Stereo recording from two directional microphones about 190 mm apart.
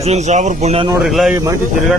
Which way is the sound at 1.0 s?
Centre (ahead or behind).